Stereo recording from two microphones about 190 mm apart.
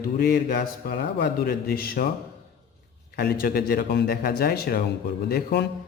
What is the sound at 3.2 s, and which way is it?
A man's voice, 50° left (ahead or behind).